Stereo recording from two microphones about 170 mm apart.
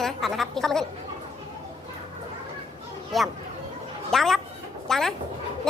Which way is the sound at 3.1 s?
Centre (ahead or behind).